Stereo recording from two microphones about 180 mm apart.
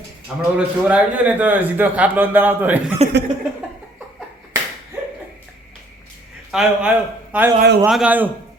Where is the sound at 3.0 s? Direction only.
35° right (ahead or behind).